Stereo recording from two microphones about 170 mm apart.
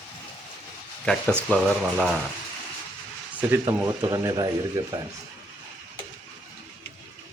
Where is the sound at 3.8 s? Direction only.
20° right (ahead or behind).